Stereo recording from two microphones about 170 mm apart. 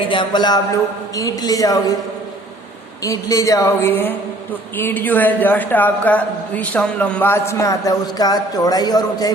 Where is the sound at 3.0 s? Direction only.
20° left (ahead or behind).